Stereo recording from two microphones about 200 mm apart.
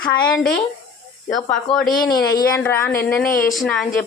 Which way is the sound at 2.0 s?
20° left (ahead or behind).